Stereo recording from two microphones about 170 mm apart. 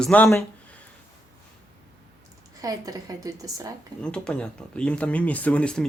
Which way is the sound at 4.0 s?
5° left (ahead or behind).